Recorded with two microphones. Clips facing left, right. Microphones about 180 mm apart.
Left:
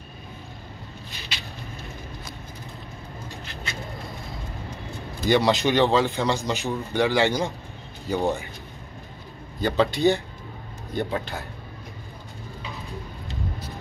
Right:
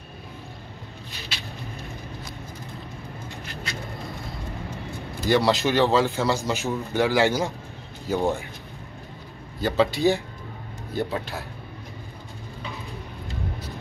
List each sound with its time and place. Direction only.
5.3 s a man's voice: centre (ahead or behind)
9.6 s a man's voice: centre (ahead or behind)